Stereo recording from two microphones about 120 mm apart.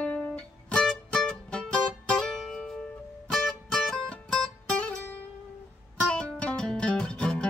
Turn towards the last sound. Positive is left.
turn(degrees=5)  # may be behind; listen again after turning